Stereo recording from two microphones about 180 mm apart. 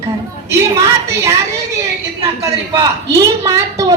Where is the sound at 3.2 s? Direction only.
15° right (ahead or behind).